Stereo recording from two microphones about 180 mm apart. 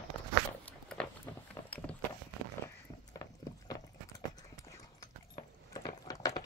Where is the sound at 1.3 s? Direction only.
15° left (ahead or behind).